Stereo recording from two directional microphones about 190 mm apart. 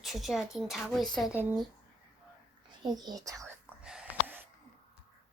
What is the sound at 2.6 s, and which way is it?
Speech, 20° right (ahead or behind).